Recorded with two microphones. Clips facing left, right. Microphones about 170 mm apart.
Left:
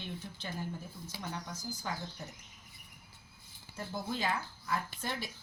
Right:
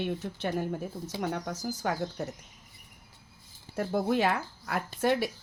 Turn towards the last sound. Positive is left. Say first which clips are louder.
# right 13 dB
turn(degrees=-70)  # may be behind; listen again after turning